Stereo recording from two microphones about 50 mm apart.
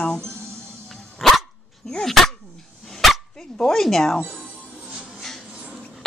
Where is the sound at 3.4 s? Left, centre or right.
Centre.